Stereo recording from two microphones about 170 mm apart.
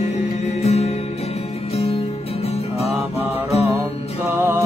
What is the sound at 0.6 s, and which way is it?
Music, 40° left (ahead or behind).